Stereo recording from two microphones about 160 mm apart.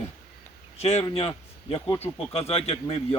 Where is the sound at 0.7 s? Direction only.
40° left (ahead or behind).